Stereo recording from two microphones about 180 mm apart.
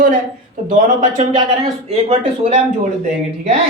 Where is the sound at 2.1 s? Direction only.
35° right (ahead or behind).